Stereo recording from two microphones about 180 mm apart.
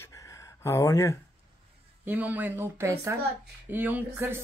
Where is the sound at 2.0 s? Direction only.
10° right (ahead or behind).